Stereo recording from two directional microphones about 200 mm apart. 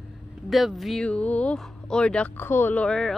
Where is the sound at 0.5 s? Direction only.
Centre (ahead or behind).